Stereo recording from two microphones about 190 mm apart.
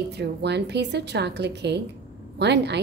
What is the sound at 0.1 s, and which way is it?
A woman's voice, 60° right (ahead or behind).